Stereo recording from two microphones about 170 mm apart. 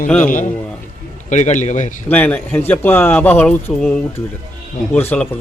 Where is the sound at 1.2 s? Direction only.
45° left (ahead or behind).